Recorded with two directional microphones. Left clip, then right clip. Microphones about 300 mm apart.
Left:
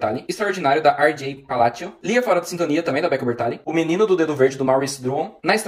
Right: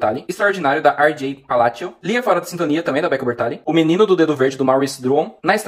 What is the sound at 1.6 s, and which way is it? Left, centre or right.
Speech, centre.